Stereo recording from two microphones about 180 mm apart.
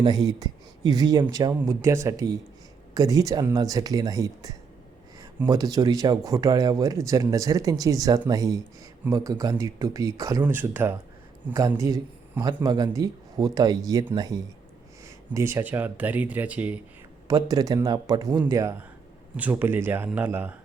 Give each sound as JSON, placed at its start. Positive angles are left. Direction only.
{"t": 0.0, "sound": "a man's voice", "side_deg": -20}
{"t": 17.2, "sound": "speech", "side_deg": -20}